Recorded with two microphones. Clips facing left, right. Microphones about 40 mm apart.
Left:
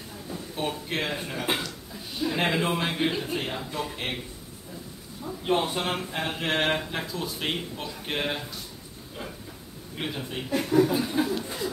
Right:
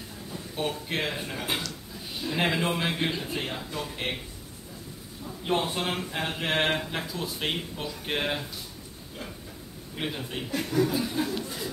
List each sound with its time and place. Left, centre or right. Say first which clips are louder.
0.3 s speech: even; centre
1.4 s speech: left 3 dB; centre
2.2 s speech: left 1 dB; centre
5.4 s speech: left 2 dB; centre
9.9 s speech: even; centre
10.5 s chuckle: left 4 dB; centre